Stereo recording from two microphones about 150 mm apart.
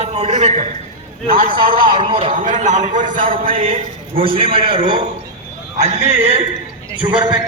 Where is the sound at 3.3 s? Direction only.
40° right (ahead or behind).